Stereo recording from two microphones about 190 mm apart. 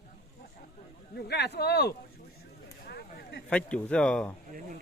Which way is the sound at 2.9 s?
60° left (ahead or behind).